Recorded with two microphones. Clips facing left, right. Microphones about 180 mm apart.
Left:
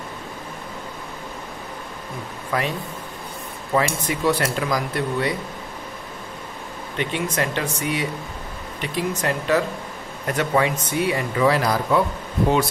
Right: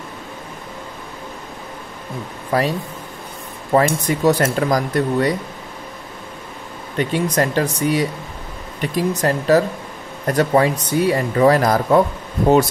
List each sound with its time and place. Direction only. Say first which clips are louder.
2.5 s speech: right 6 dB; 35° right (ahead or behind)
3.7 s speech: right 6 dB; 45° right (ahead or behind)
7.0 s speech: right 6 dB; 40° right (ahead or behind)